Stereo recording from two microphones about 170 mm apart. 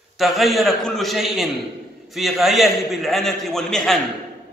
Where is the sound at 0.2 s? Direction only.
Centre (ahead or behind).